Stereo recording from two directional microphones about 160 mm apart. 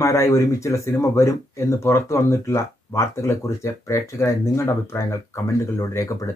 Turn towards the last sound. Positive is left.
turn(degrees=20)  # may be behind; listen again after turning